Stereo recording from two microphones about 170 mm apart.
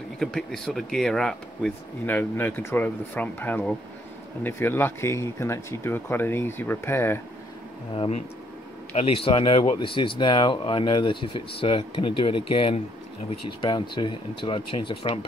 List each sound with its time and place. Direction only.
0.2 s speech: centre (ahead or behind)
7.9 s speech: 30° left (ahead or behind)